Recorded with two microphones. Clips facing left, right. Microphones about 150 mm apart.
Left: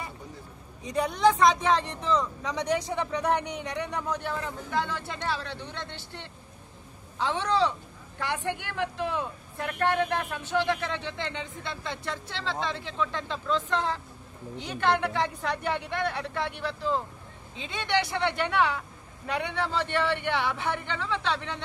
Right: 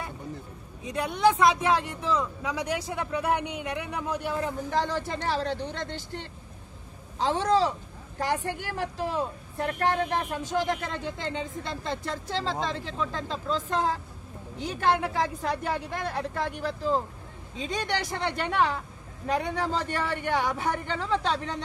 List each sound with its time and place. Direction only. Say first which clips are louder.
0.8 s speech: even; 5° right (ahead or behind)
4.6 s speech: even; 40° right (ahead or behind)